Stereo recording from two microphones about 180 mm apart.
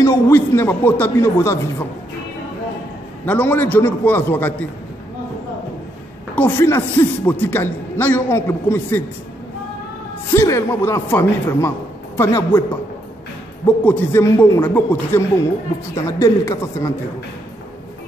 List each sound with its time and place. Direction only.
0.0 s a man's voice: 15° left (ahead or behind)
3.3 s a man's voice: 10° left (ahead or behind)
6.3 s a man's voice: 10° left (ahead or behind)
10.3 s a man's voice: 15° left (ahead or behind)
13.7 s a man's voice: 10° left (ahead or behind)